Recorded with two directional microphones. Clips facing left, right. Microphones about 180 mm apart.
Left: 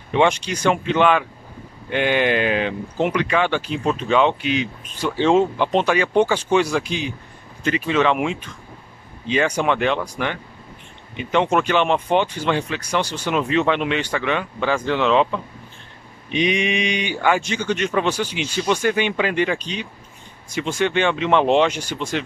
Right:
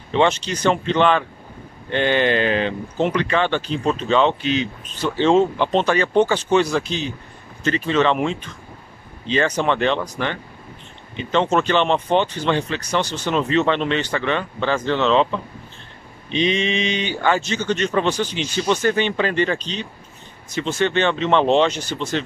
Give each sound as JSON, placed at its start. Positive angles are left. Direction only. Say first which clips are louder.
{"t": 0.1, "sound": "speech", "louder": "even", "side_deg": 10}